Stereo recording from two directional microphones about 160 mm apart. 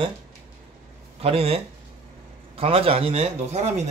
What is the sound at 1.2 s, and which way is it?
Speech, 40° right (ahead or behind).